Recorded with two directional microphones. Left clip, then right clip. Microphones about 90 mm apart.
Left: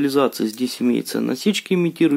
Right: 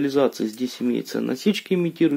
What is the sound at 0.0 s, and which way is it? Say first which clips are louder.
Speech: left 2 dB; 35° left (ahead or behind).